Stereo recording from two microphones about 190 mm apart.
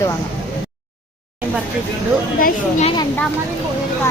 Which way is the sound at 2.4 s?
45° left (ahead or behind).